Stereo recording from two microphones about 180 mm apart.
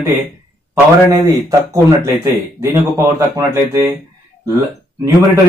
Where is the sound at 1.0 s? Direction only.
20° right (ahead or behind).